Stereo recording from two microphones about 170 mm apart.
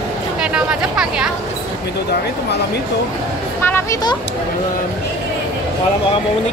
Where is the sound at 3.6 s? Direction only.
15° left (ahead or behind).